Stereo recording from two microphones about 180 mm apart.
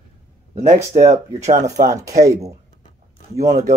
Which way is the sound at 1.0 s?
40° right (ahead or behind).